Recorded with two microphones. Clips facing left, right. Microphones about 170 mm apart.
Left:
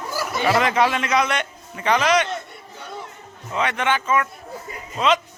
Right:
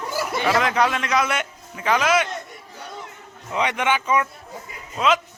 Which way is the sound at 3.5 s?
15° right (ahead or behind).